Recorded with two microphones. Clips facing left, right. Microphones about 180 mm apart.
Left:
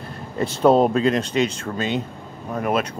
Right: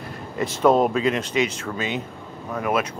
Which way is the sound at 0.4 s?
30° left (ahead or behind).